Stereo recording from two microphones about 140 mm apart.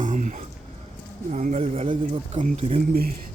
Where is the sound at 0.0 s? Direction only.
65° right (ahead or behind).